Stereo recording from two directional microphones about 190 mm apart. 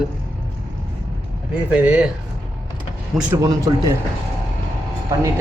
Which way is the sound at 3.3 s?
15° right (ahead or behind).